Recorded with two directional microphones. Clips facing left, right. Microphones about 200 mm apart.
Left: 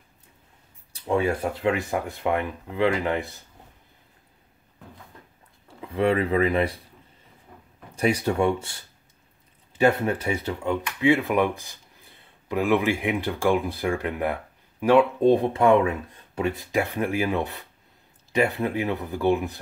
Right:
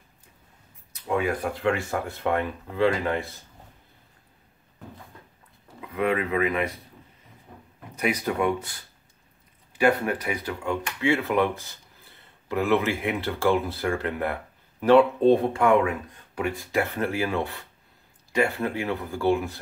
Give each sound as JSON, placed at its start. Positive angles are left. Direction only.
{"t": 0.9, "sound": "speech", "side_deg": 30}
{"t": 5.9, "sound": "speech", "side_deg": 30}
{"t": 7.9, "sound": "speech", "side_deg": 30}
{"t": 15.6, "sound": "speech", "side_deg": 25}